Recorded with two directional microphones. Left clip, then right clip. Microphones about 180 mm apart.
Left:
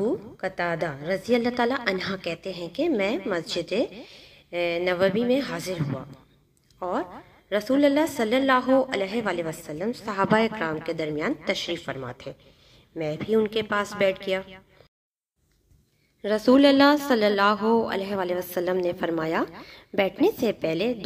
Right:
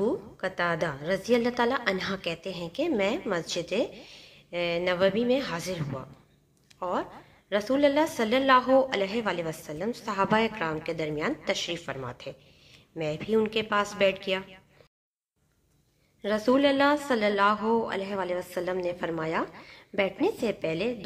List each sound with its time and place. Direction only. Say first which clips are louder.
0.0 s a woman's voice: left 2 dB; 30° left (ahead or behind)
16.2 s speech: left 5 dB; 40° left (ahead or behind)